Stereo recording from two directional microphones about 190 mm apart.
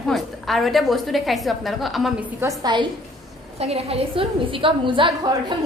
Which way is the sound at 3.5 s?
30° right (ahead or behind).